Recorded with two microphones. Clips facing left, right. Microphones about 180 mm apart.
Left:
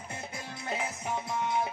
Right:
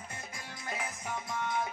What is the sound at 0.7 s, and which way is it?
Music, 25° left (ahead or behind).